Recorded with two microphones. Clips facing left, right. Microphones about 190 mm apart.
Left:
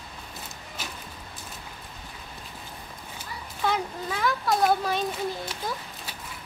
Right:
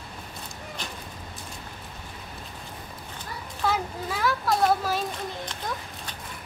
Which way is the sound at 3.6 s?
5° right (ahead or behind).